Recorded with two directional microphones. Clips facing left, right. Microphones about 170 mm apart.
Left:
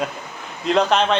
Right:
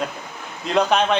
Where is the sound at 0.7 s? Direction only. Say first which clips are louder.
Even; 5° right (ahead or behind).